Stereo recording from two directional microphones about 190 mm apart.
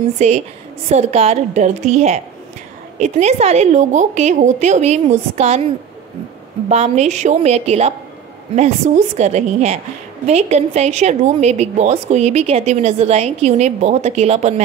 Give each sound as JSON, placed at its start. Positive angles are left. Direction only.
{"t": 0.2, "sound": "a woman's voice", "side_deg": -35}
{"t": 6.7, "sound": "a woman's voice", "side_deg": -35}